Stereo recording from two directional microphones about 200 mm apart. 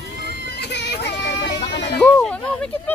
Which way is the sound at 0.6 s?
60° left (ahead or behind).